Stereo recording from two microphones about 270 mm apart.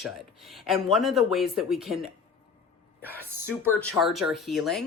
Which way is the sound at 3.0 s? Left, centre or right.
Centre.